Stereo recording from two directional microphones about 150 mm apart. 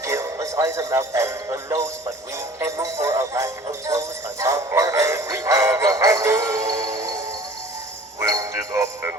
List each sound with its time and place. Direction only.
0.0 s speech: 20° right (ahead or behind)
8.2 s music: 20° right (ahead or behind)